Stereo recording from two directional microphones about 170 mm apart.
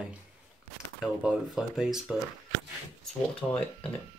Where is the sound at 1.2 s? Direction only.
Centre (ahead or behind).